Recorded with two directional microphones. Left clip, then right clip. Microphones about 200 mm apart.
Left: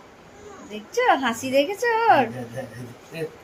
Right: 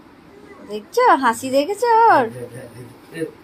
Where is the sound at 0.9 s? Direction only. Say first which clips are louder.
Right 6 dB; 25° right (ahead or behind).